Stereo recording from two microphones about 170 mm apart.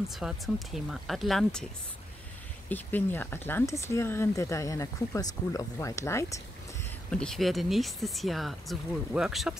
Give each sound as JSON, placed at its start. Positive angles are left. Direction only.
{"t": 0.1, "sound": "speech", "side_deg": 0}
{"t": 2.7, "sound": "speech", "side_deg": 10}
{"t": 7.1, "sound": "speech", "side_deg": 5}